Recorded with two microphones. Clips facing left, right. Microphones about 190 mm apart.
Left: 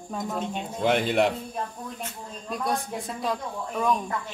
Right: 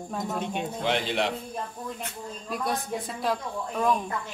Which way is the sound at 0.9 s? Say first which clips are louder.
Left 6 dB; 50° left (ahead or behind).